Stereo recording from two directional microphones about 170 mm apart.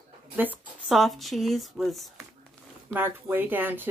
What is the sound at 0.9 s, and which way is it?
Speech, centre (ahead or behind).